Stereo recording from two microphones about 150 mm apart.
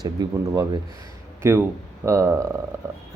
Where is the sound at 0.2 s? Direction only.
25° right (ahead or behind).